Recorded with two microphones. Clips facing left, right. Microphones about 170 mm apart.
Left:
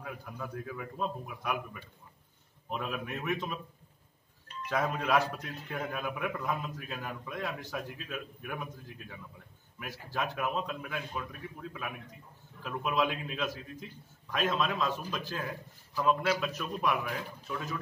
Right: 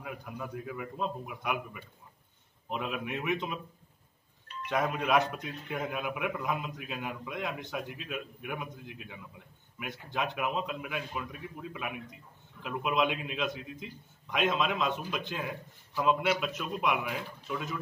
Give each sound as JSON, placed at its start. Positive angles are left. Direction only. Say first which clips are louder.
{"t": 0.0, "sound": "a man's voice", "louder": "right 1 dB", "side_deg": -5}
{"t": 4.6, "sound": "a man's voice", "louder": "right 1 dB", "side_deg": 0}
{"t": 9.8, "sound": "a man's voice", "louder": "right 1 dB", "side_deg": 5}
{"t": 14.4, "sound": "speech", "louder": "right 1 dB", "side_deg": -15}
{"t": 16.4, "sound": "a man's voice", "louder": "right 1 dB", "side_deg": 0}